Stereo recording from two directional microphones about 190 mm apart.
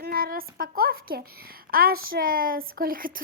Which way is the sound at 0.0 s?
55° right (ahead or behind).